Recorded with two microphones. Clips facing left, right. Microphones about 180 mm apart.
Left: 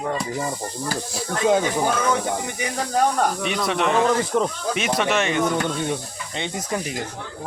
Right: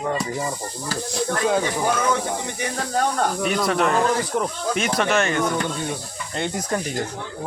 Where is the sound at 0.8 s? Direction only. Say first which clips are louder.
Right 4 dB; 5° left (ahead or behind).